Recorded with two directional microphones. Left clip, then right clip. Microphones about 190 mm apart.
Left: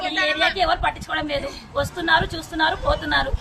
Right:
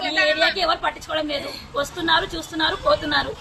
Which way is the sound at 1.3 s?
15° left (ahead or behind).